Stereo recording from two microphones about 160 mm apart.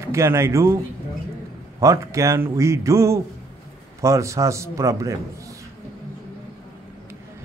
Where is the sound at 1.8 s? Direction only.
20° right (ahead or behind).